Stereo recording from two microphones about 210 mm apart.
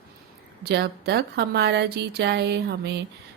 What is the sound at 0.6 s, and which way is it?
A woman's voice, 50° right (ahead or behind).